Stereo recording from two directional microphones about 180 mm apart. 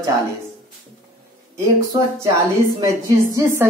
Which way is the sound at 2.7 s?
20° right (ahead or behind).